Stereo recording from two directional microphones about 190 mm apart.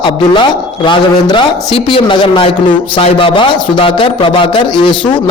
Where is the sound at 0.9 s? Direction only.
25° left (ahead or behind).